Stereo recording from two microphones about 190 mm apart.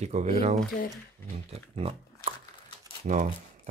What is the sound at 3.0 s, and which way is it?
Speech, 40° right (ahead or behind).